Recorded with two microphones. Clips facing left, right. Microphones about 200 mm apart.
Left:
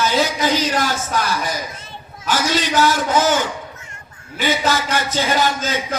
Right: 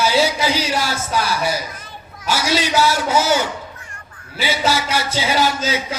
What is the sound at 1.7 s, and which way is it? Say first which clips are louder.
Children playing: even; 25° left (ahead or behind).